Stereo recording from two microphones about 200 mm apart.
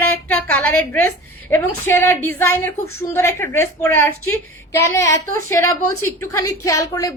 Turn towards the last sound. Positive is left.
turn(degrees=15)  # may be behind; listen again after turning